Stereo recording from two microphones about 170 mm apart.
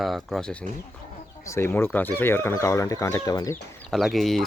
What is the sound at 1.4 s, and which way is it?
Speech, 15° left (ahead or behind).